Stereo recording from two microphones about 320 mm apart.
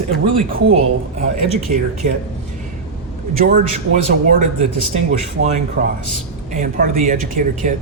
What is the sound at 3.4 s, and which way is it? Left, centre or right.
Speech, right.